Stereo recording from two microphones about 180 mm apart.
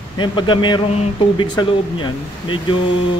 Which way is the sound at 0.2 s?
25° left (ahead or behind).